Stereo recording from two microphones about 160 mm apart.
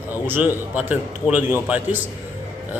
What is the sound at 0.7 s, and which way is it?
A man's voice, 10° right (ahead or behind).